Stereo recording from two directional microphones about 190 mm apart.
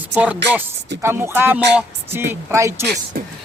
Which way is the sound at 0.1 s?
5° right (ahead or behind).